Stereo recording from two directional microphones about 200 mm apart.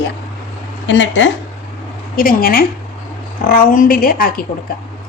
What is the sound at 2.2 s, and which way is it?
A woman's voice, 45° left (ahead or behind).